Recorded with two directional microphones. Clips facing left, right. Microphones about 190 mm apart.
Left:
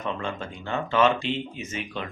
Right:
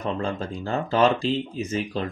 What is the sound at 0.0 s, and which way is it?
Speech, 35° right (ahead or behind).